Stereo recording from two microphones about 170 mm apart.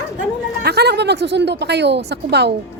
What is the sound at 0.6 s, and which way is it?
A woman's voice, 75° right (ahead or behind).